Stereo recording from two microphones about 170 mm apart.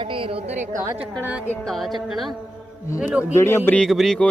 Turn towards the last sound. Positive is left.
turn(degrees=0)  # may be behind; listen again after turning